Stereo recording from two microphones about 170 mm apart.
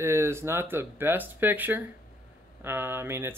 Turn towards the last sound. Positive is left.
turn(degrees=-15)  # may be behind; listen again after turning